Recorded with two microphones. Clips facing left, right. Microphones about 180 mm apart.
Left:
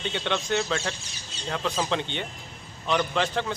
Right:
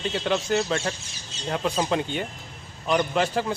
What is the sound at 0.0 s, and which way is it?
A man's voice, 5° right (ahead or behind).